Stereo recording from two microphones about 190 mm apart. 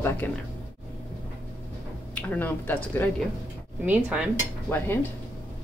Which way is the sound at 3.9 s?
5° right (ahead or behind).